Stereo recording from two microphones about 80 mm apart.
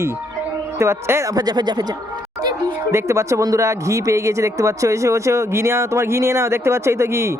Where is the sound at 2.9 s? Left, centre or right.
Right.